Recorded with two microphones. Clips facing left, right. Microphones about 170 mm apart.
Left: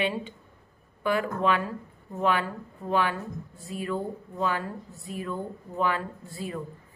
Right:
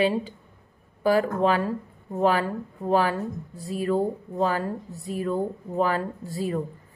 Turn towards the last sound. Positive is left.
turn(degrees=-40)  # may be behind; listen again after turning